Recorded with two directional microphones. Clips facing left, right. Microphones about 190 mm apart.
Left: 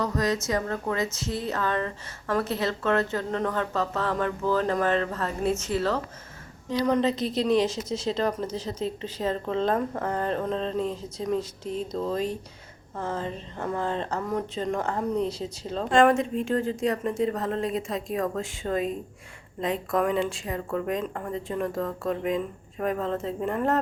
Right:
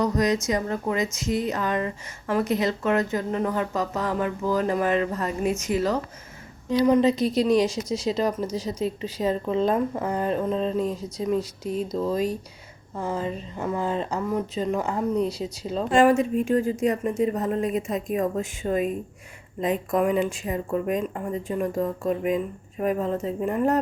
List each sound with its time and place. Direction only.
0.0 s speech: 15° right (ahead or behind)
7.1 s a woman's voice: 25° left (ahead or behind)
8.0 s speech: 10° right (ahead or behind)